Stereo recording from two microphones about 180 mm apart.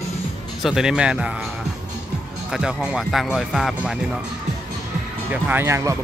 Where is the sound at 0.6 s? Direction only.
5° right (ahead or behind).